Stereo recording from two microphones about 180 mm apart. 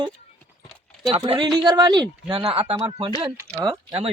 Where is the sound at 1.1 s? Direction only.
30° right (ahead or behind).